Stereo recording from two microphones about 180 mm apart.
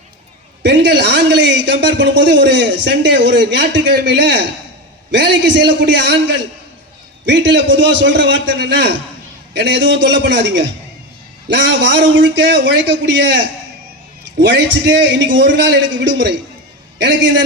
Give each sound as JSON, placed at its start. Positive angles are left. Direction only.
{"t": 0.6, "sound": "a man's voice", "side_deg": -75}